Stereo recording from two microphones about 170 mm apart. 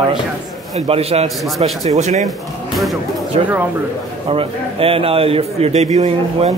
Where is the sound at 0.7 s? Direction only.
35° right (ahead or behind).